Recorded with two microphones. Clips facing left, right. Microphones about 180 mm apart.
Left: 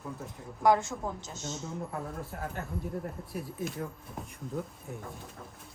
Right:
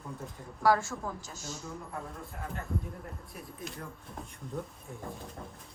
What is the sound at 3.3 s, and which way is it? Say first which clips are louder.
Speech: left 9 dB; centre (ahead or behind).